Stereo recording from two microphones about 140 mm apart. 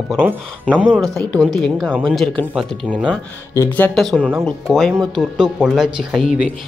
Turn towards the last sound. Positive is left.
turn(degrees=-5)  # may be behind; listen again after turning